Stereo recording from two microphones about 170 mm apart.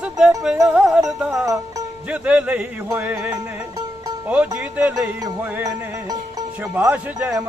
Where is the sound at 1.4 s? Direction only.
20° right (ahead or behind).